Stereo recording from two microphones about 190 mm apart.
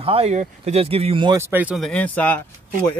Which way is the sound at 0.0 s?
30° right (ahead or behind).